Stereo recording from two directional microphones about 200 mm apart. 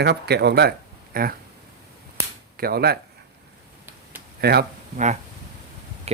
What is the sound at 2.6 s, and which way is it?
Speech, 50° right (ahead or behind).